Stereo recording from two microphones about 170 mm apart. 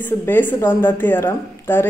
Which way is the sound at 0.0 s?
10° left (ahead or behind).